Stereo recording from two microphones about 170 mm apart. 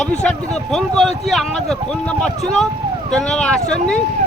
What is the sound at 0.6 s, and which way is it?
Speech, centre (ahead or behind).